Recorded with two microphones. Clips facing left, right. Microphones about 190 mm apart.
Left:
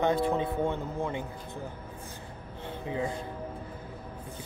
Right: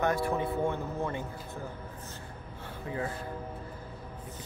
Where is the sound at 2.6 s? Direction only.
20° left (ahead or behind).